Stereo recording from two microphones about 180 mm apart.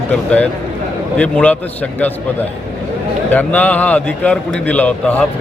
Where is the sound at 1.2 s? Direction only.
10° left (ahead or behind).